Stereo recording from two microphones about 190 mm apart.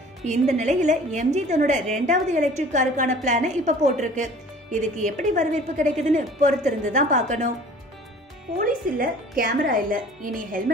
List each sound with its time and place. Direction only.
0.2 s a woman's voice: 40° right (ahead or behind)
8.5 s a woman's voice: 50° right (ahead or behind)